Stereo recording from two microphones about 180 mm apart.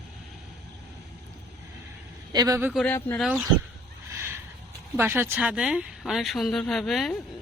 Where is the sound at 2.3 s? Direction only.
20° right (ahead or behind).